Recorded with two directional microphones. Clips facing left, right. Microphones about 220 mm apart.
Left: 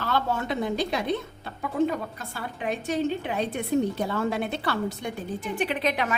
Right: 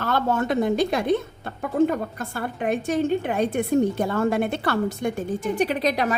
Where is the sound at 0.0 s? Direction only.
50° right (ahead or behind).